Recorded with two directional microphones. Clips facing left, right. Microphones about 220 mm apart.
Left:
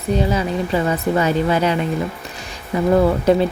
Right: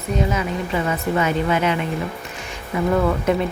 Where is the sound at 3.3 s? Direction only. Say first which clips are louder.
Left 6 dB; 35° left (ahead or behind).